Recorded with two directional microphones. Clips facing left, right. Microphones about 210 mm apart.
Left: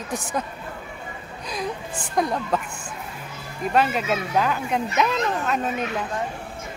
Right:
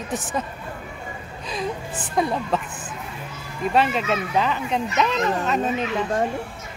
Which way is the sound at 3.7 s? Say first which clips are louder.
Right 1 dB; centre (ahead or behind).